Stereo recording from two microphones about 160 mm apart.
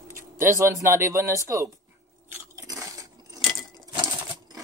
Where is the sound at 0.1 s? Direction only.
15° right (ahead or behind).